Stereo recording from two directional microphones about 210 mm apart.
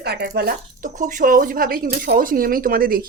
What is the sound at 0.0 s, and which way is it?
Speech, 50° right (ahead or behind).